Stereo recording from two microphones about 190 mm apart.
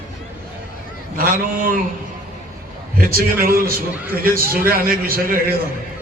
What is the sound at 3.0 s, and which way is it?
A man's voice, 50° right (ahead or behind).